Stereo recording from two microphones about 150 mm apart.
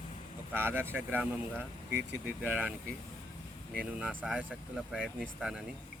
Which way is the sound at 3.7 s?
10° right (ahead or behind).